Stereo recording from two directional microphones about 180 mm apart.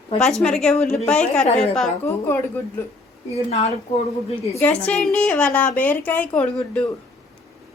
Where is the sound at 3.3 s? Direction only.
35° left (ahead or behind).